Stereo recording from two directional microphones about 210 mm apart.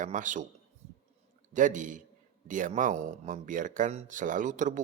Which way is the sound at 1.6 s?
35° right (ahead or behind).